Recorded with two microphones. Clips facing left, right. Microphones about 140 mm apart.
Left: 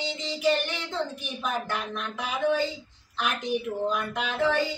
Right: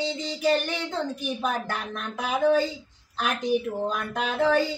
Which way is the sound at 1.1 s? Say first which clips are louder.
Right 3 dB; 40° right (ahead or behind).